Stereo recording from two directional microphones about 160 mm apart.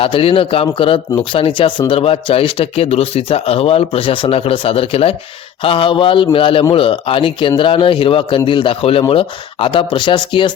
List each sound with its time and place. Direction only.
0.0 s speech: 35° left (ahead or behind)